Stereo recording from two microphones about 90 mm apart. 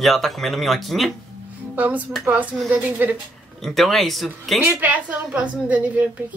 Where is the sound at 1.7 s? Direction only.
20° right (ahead or behind).